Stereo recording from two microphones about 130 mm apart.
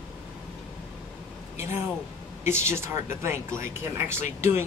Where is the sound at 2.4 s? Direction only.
20° right (ahead or behind).